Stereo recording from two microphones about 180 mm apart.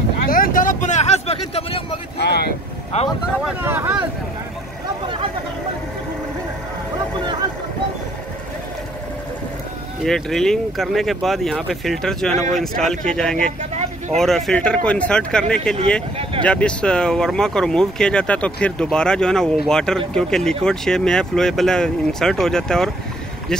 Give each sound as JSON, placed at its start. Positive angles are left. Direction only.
{"t": 0.3, "sound": "a sound", "side_deg": 50}
{"t": 2.1, "sound": "speech", "side_deg": 65}
{"t": 2.9, "sound": "speech", "side_deg": 35}
{"t": 3.4, "sound": "speech", "side_deg": -10}
{"t": 10.0, "sound": "speech", "side_deg": 5}
{"t": 13.6, "sound": "vehicle", "side_deg": -40}
{"t": 14.1, "sound": "speech", "side_deg": 0}